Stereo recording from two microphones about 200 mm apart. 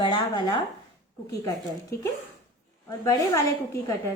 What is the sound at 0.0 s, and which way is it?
A woman's voice, 25° left (ahead or behind).